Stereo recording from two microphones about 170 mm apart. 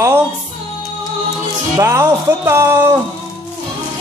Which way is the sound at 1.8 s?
15° right (ahead or behind).